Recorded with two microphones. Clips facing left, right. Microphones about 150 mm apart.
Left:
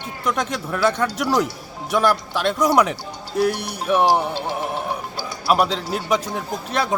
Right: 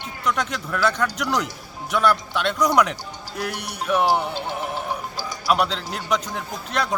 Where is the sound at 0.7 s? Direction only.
30° left (ahead or behind).